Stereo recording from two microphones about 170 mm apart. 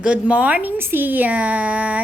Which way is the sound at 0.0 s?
5° right (ahead or behind).